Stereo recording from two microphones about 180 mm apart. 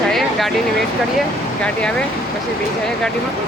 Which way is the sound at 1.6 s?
5° left (ahead or behind).